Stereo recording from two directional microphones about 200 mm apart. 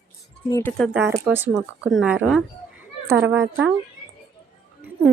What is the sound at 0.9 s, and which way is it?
Speech, 10° right (ahead or behind).